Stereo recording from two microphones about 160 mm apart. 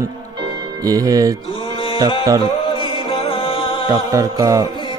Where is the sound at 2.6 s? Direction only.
35° left (ahead or behind).